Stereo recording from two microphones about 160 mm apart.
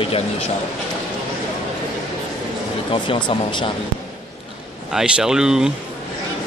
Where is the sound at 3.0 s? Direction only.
30° left (ahead or behind).